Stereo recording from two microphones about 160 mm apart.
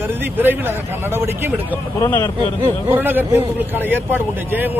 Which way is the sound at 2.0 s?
20° left (ahead or behind).